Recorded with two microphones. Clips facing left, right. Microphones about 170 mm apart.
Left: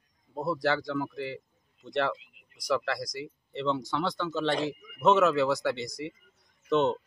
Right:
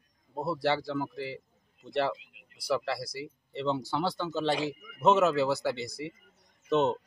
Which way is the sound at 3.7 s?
30° right (ahead or behind).